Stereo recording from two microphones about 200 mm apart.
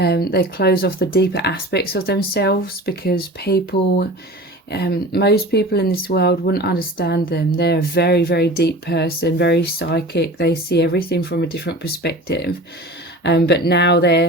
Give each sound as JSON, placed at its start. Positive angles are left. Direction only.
{"t": 0.0, "sound": "speech", "side_deg": 50}